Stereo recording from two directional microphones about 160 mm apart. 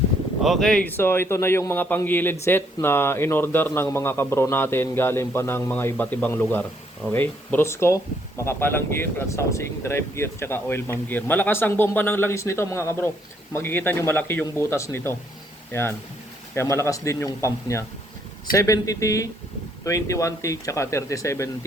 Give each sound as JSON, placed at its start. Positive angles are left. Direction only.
{"t": 0.4, "sound": "a man's voice", "side_deg": 0}